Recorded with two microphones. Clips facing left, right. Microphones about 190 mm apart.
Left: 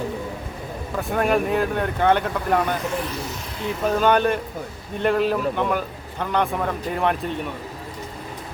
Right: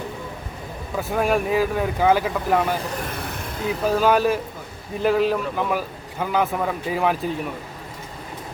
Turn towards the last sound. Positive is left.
turn(degrees=0)  # may be behind; listen again after turning